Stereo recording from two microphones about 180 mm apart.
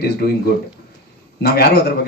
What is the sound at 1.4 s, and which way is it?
Speech, 60° left (ahead or behind).